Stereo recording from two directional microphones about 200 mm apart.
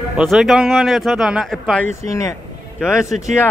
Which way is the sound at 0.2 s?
Centre (ahead or behind).